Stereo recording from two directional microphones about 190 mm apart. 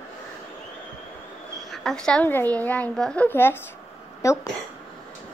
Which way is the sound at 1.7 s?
Centre (ahead or behind).